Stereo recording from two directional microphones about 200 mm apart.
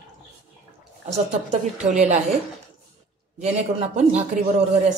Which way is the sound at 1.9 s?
35° right (ahead or behind).